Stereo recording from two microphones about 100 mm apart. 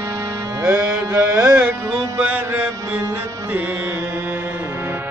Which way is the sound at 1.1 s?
10° right (ahead or behind).